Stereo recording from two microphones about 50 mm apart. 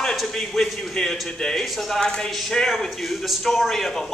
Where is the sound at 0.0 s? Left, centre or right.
Centre.